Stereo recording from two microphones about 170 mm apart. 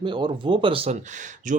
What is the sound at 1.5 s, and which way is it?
Speech, 50° right (ahead or behind).